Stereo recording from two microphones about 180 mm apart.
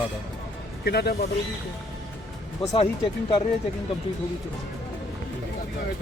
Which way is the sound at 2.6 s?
30° left (ahead or behind).